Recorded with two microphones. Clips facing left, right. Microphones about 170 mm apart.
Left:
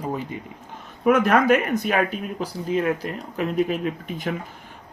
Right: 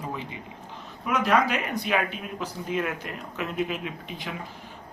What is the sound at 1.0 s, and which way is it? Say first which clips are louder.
Speech: left 7 dB; 50° left (ahead or behind).